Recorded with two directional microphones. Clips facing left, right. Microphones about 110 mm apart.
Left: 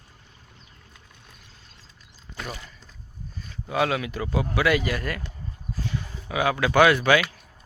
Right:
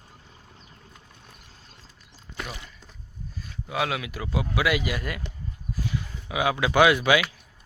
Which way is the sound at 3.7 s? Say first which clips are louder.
Left 4 dB; 5° right (ahead or behind).